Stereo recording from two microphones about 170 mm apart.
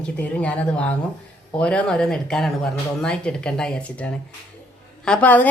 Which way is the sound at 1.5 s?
5° left (ahead or behind).